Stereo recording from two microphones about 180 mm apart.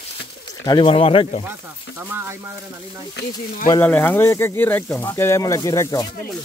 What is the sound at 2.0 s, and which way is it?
Speech, 10° right (ahead or behind).